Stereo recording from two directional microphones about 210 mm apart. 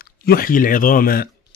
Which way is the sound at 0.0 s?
45° left (ahead or behind).